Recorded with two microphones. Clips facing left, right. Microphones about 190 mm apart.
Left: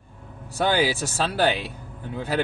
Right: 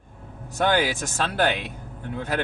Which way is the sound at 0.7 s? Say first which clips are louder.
Even; 10° left (ahead or behind).